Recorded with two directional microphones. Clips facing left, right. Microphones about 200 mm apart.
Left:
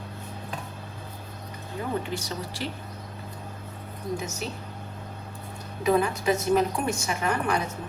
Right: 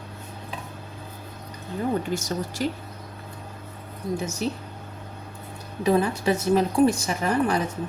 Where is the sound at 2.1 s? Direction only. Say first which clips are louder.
Right 5 dB; 45° right (ahead or behind).